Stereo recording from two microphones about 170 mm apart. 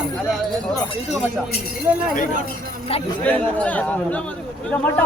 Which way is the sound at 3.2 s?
10° left (ahead or behind).